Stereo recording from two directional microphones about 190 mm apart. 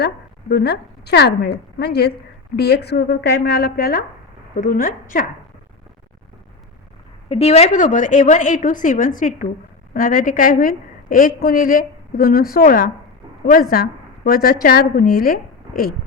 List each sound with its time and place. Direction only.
0.0 s a woman's voice: 60° left (ahead or behind)
7.3 s a woman's voice: 30° left (ahead or behind); by 16.0 s 50° left (ahead or behind)